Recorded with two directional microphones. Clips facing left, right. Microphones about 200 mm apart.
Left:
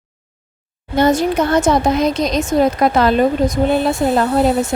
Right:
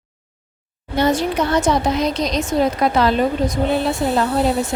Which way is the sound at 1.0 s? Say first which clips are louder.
Left 4 dB; 45° left (ahead or behind).